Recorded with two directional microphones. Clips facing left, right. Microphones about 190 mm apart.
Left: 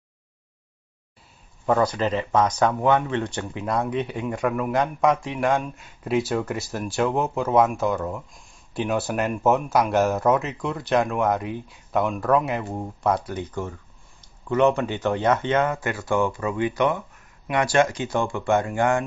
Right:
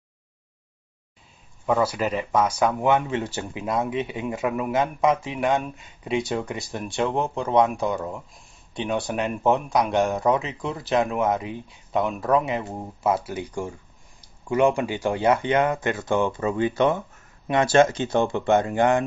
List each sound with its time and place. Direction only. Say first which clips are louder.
1.7 s speech: left 1 dB; 5° right (ahead or behind)